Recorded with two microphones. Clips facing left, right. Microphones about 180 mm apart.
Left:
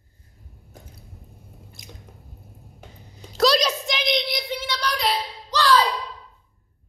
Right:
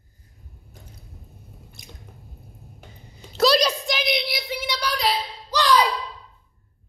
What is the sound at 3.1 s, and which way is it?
A woman's voice, centre (ahead or behind).